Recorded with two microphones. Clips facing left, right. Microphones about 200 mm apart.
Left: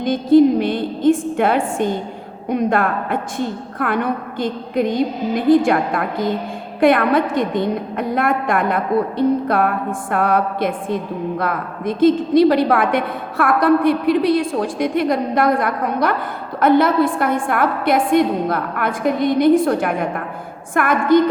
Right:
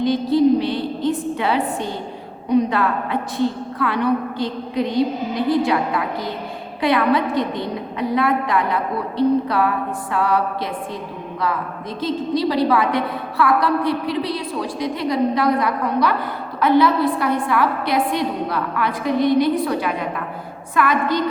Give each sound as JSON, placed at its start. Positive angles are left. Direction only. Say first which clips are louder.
{"t": 0.0, "sound": "a woman's voice", "louder": "left 4 dB", "side_deg": 50}